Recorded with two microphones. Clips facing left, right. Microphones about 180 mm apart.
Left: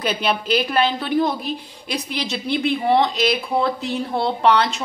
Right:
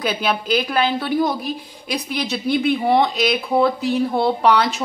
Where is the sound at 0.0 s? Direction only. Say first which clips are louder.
Even; centre (ahead or behind).